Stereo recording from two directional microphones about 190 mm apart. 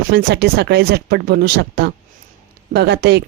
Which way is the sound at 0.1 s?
55° right (ahead or behind).